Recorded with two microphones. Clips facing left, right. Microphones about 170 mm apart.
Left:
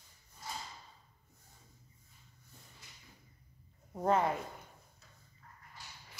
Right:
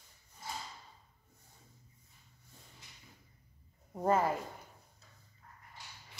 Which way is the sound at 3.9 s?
5° right (ahead or behind).